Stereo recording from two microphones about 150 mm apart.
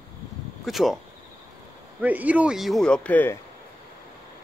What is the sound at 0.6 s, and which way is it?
Speech, centre (ahead or behind).